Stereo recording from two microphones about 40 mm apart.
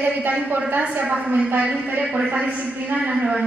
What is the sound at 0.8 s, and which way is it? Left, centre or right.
A man's voice, right.